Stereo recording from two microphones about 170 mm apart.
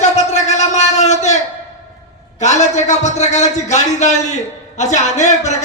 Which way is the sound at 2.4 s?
45° left (ahead or behind).